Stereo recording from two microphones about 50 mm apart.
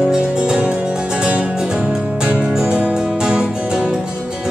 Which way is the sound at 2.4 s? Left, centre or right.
Centre.